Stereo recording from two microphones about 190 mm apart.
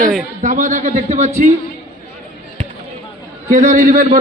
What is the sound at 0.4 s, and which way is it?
Speech, 45° right (ahead or behind).